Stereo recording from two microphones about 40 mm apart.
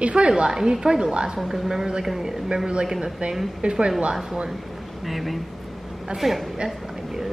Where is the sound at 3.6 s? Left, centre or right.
Right.